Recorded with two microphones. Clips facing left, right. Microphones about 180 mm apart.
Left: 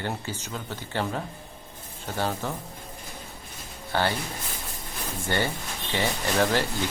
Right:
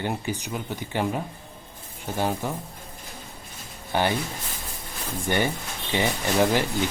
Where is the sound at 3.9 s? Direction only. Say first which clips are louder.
Right 2 dB; 15° right (ahead or behind).